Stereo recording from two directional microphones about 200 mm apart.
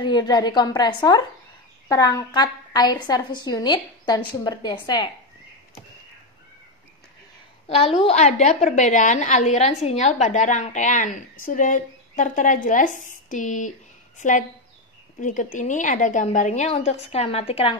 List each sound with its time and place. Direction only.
0.0 s a woman's voice: 20° left (ahead or behind)
7.6 s a woman's voice: 30° left (ahead or behind)